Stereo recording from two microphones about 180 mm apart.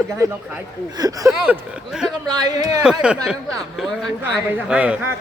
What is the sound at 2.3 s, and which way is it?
Speech, 20° right (ahead or behind).